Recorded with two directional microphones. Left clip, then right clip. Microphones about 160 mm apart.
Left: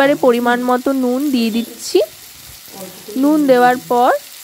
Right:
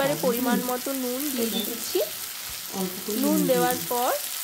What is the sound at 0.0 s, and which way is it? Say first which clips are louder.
Speech: left 12 dB; 50° left (ahead or behind).